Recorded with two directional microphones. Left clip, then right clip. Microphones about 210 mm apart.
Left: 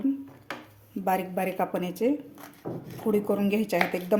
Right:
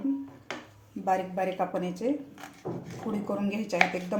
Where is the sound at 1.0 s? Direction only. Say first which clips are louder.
Left 1 dB; 40° left (ahead or behind).